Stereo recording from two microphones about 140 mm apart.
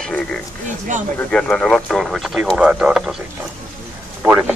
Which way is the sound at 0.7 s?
65° right (ahead or behind).